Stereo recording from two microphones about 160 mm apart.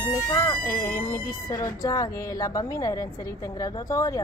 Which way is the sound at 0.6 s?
60° left (ahead or behind).